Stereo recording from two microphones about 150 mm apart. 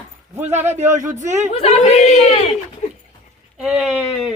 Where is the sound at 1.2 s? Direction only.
50° right (ahead or behind).